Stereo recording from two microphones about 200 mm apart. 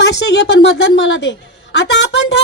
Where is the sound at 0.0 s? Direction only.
60° left (ahead or behind).